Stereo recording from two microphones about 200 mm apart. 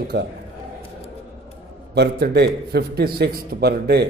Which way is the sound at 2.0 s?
55° right (ahead or behind).